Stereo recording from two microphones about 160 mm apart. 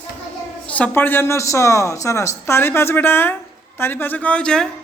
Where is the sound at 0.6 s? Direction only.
10° left (ahead or behind).